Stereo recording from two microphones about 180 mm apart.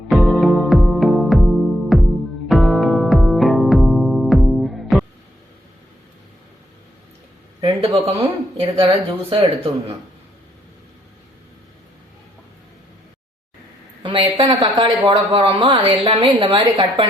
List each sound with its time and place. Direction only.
0.1 s music: centre (ahead or behind)
7.6 s a sound: 30° right (ahead or behind)
8.5 s speech: 35° right (ahead or behind)
14.0 s speech: 30° right (ahead or behind)